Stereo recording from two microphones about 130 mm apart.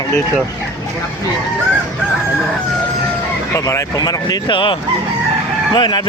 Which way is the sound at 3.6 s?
30° left (ahead or behind).